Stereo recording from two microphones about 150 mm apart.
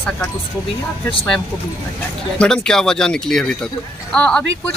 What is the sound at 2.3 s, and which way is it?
Speech, 5° left (ahead or behind).